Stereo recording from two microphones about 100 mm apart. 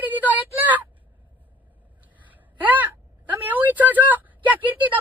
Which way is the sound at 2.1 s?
15° right (ahead or behind).